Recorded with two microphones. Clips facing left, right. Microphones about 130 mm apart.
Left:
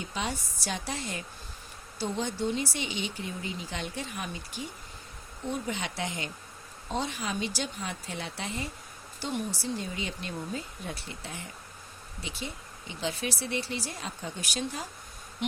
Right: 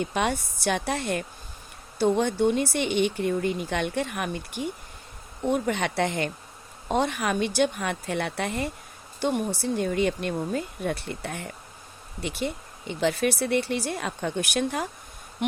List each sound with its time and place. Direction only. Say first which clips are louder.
0.0 s speech: right 8 dB; 60° right (ahead or behind)